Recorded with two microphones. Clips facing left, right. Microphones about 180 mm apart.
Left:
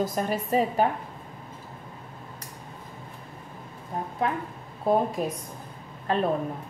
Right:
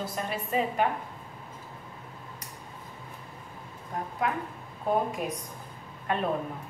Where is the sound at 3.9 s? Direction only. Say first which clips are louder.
Left 2 dB; 25° left (ahead or behind).